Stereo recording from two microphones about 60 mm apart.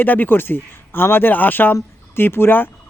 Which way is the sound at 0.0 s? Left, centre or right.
Left.